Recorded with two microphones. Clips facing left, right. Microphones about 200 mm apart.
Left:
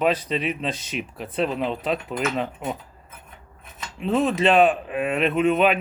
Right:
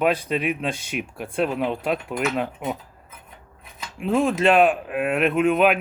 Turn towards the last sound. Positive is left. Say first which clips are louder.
# right 1 dB
turn(degrees=-5)  # may be behind; listen again after turning